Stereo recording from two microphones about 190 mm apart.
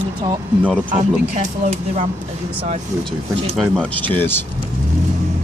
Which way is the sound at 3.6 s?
5° left (ahead or behind).